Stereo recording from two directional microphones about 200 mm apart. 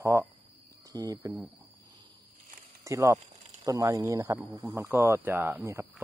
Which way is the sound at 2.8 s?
15° right (ahead or behind).